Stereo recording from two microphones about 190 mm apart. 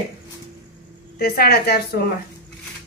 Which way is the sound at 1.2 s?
55° left (ahead or behind).